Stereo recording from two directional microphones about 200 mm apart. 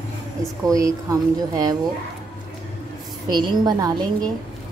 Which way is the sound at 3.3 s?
20° right (ahead or behind).